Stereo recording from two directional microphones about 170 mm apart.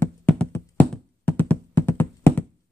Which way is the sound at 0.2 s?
10° left (ahead or behind).